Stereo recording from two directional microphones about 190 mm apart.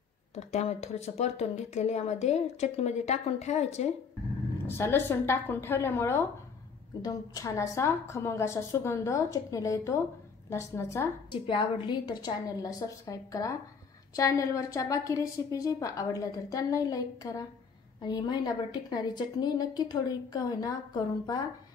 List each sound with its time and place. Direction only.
0.3 s speech: 35° left (ahead or behind)
4.6 s a woman's voice: 10° left (ahead or behind)
11.4 s a woman's voice: 25° left (ahead or behind)